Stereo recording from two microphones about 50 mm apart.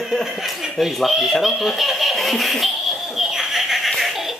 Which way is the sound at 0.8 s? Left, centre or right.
Centre.